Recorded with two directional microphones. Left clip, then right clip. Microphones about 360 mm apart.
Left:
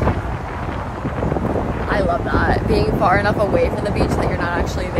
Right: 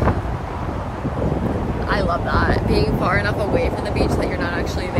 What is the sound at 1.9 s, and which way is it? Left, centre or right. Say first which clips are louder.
Speech: left 1 dB; centre.